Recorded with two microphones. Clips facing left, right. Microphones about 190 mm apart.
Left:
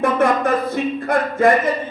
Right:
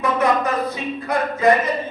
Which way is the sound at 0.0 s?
50° left (ahead or behind).